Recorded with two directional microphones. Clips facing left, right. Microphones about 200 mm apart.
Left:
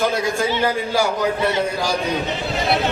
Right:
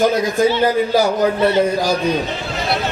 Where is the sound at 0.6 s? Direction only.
40° right (ahead or behind).